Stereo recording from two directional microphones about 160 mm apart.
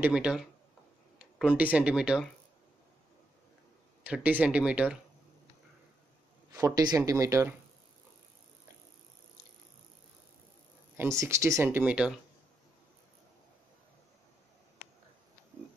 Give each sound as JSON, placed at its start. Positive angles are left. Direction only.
{"t": 0.0, "sound": "speech", "side_deg": -5}
{"t": 4.0, "sound": "speech", "side_deg": -10}
{"t": 6.5, "sound": "speech", "side_deg": -20}
{"t": 11.0, "sound": "speech", "side_deg": -20}